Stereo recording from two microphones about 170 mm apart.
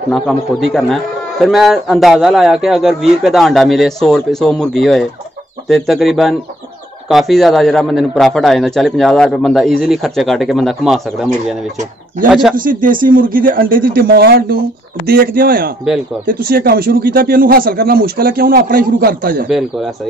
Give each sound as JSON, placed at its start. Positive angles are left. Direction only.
{"t": 0.1, "sound": "a man's voice", "side_deg": 5}
{"t": 12.3, "sound": "a man's voice", "side_deg": -5}
{"t": 12.5, "sound": "speech", "side_deg": -55}